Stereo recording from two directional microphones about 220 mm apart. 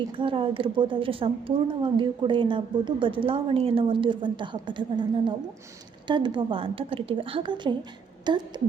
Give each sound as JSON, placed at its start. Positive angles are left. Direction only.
{"t": 0.2, "sound": "a woman's voice", "side_deg": -25}